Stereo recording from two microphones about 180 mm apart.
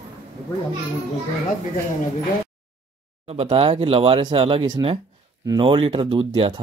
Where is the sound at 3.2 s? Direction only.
35° right (ahead or behind).